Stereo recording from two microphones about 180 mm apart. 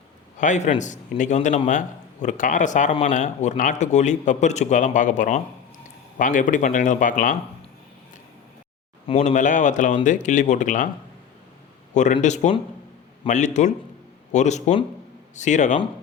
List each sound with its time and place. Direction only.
0.3 s a man's voice: 40° left (ahead or behind)
9.0 s a man's voice: 40° left (ahead or behind)
12.1 s a man's voice: 40° left (ahead or behind)